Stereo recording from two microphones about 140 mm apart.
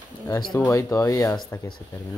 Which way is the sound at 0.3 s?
30° left (ahead or behind).